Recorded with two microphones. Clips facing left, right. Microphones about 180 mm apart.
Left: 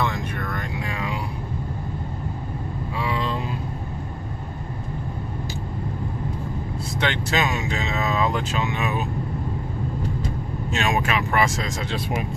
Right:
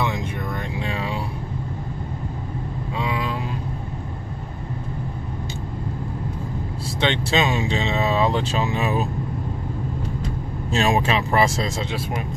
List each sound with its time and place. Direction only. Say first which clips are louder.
0.0 s vehicle: right 1 dB; 15° right (ahead or behind)
3.0 s vehicle: even; 15° right (ahead or behind)
7.0 s speech: right 3 dB; 25° right (ahead or behind)
10.7 s speech: right 3 dB; 30° right (ahead or behind)